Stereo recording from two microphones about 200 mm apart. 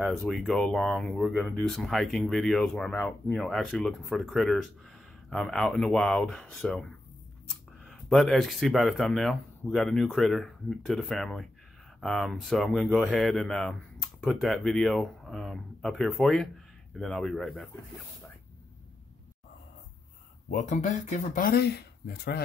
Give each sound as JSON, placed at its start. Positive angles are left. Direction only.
{"t": 0.0, "sound": "speech", "side_deg": 0}
{"t": 20.5, "sound": "speech", "side_deg": 35}